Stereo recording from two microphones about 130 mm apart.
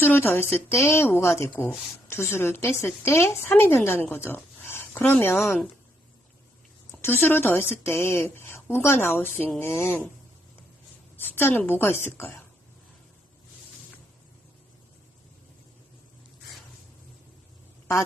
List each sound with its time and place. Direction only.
0.0 s a woman's voice: 15° left (ahead or behind)
6.9 s a woman's voice: 15° left (ahead or behind)
11.2 s a woman's voice: 15° left (ahead or behind)